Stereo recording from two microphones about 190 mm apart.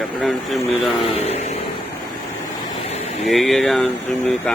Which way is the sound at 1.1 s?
35° left (ahead or behind).